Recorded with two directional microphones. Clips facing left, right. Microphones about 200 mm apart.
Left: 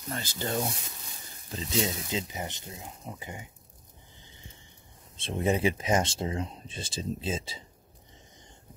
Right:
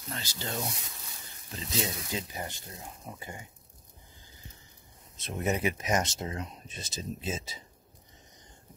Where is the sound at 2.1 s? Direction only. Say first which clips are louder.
Left 3 dB; 20° left (ahead or behind).